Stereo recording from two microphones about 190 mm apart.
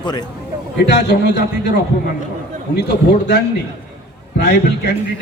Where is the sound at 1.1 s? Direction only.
60° left (ahead or behind).